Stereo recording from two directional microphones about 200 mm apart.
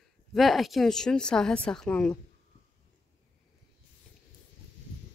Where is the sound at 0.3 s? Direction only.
Centre (ahead or behind).